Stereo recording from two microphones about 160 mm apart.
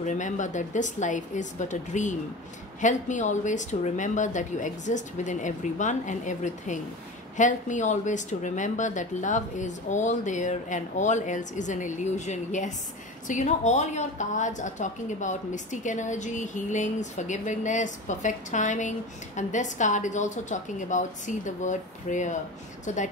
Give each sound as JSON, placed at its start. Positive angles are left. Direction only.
{"t": 0.0, "sound": "a woman's voice", "side_deg": 50}